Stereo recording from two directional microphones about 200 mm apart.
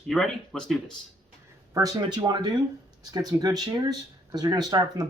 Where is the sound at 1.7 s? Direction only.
15° right (ahead or behind).